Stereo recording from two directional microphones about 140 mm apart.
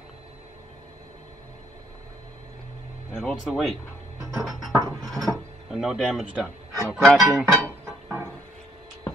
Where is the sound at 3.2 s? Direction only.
Centre (ahead or behind).